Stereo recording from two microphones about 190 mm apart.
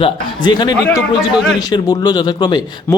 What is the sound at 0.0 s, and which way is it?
Speech, 25° left (ahead or behind).